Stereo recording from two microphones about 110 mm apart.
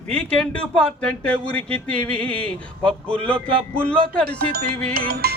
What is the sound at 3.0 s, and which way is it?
Speech, 10° left (ahead or behind).